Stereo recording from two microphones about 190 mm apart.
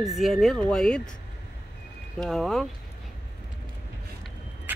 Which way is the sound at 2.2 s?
Centre (ahead or behind).